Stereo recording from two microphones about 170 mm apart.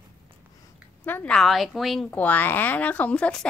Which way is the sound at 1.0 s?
10° left (ahead or behind).